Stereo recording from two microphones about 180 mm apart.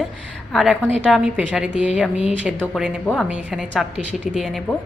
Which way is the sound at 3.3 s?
5° right (ahead or behind).